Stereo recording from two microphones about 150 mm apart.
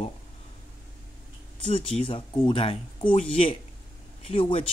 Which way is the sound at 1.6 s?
40° left (ahead or behind).